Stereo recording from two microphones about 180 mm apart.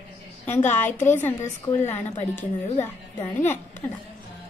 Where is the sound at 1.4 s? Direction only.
40° left (ahead or behind).